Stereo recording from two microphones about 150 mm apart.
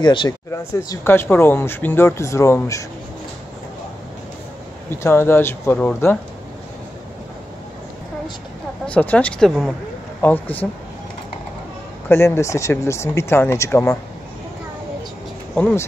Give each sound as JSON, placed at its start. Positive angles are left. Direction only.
{"t": 0.0, "sound": "speech", "side_deg": 30}
{"t": 0.8, "sound": "speech", "side_deg": 15}
{"t": 4.9, "sound": "speech", "side_deg": 15}
{"t": 8.8, "sound": "speech", "side_deg": 10}
{"t": 12.1, "sound": "speech", "side_deg": 15}
{"t": 15.5, "sound": "speech", "side_deg": 10}